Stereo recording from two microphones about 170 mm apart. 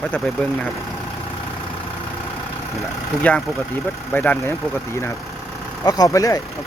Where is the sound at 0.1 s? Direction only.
10° left (ahead or behind).